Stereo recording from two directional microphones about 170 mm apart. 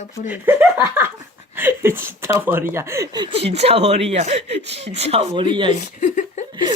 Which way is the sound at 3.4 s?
40° right (ahead or behind).